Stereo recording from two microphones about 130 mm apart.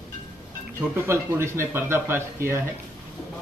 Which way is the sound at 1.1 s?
20° right (ahead or behind).